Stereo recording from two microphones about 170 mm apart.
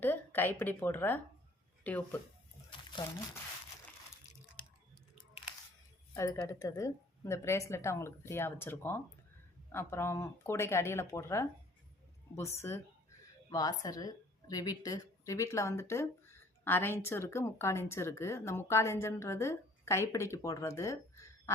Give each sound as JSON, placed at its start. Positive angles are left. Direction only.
{"t": 0.0, "sound": "a woman's voice", "side_deg": 10}
{"t": 6.1, "sound": "a woman's voice", "side_deg": 15}